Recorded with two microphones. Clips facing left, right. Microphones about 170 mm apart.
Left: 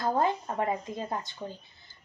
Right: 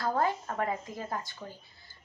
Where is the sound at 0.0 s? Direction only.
20° left (ahead or behind).